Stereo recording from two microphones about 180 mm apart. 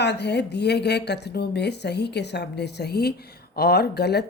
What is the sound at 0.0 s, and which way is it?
Speech, 70° left (ahead or behind).